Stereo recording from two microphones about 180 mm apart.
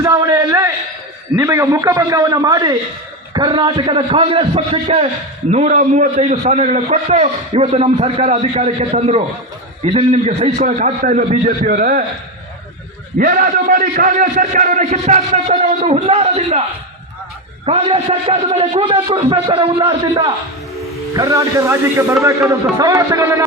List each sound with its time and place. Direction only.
0.0 s a man's voice: 20° right (ahead or behind); by 12.0 s 50° right (ahead or behind)
13.1 s a man's voice: 50° right (ahead or behind); by 16.6 s 35° right (ahead or behind)
17.7 s a man's voice: 35° right (ahead or behind)
21.2 s speech: 15° right (ahead or behind)